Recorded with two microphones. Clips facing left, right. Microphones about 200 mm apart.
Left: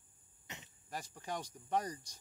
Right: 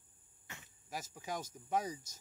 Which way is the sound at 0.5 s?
20° left (ahead or behind).